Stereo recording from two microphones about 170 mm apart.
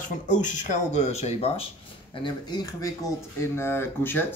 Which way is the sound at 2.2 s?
25° left (ahead or behind).